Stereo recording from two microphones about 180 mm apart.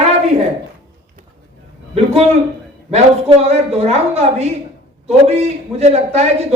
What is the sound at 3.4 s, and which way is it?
A woman's voice, 35° right (ahead or behind).